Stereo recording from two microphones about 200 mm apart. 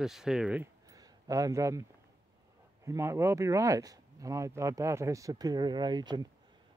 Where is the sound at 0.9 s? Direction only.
15° right (ahead or behind).